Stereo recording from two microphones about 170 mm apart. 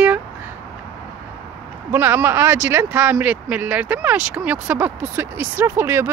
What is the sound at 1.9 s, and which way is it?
Speech, 10° right (ahead or behind).